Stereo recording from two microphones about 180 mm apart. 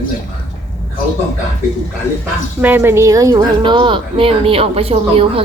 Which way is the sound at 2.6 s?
10° right (ahead or behind).